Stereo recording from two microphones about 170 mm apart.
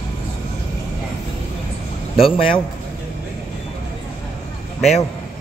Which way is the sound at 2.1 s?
30° left (ahead or behind).